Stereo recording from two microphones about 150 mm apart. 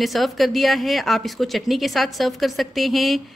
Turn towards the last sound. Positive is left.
turn(degrees=0)  # may be behind; listen again after turning